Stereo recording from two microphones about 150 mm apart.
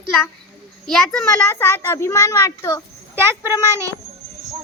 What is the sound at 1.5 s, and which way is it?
A child's voice, 15° left (ahead or behind).